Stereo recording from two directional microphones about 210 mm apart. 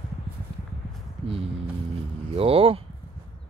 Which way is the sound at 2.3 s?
25° right (ahead or behind).